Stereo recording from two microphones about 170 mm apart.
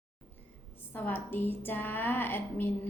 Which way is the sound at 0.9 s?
10° left (ahead or behind).